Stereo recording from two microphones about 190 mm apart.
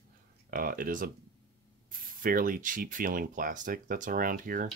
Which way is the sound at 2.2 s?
45° right (ahead or behind).